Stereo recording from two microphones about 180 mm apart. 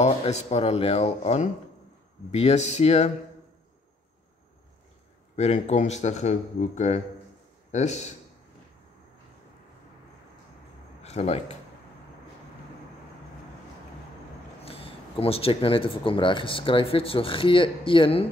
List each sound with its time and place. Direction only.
0.0 s a man's voice: 35° left (ahead or behind)
5.3 s a man's voice: 40° left (ahead or behind)
11.0 s speech: 35° left (ahead or behind)
14.6 s speech: 30° left (ahead or behind)